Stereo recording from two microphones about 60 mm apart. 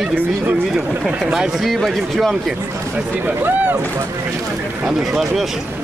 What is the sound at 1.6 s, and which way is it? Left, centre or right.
Speech, centre.